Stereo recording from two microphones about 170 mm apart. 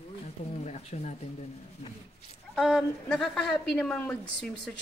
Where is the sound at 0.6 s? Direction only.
40° left (ahead or behind).